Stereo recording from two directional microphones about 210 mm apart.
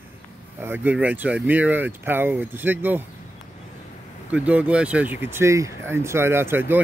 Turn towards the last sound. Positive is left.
turn(degrees=-10)  # may be behind; listen again after turning